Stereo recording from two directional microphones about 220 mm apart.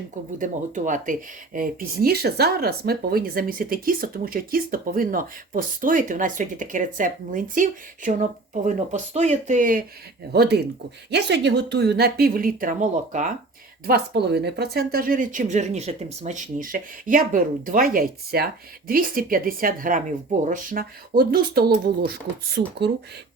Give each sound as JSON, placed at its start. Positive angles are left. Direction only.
{"t": 0.3, "sound": "speech", "side_deg": -35}
{"t": 10.3, "sound": "speech", "side_deg": -50}
{"t": 13.8, "sound": "speech", "side_deg": -45}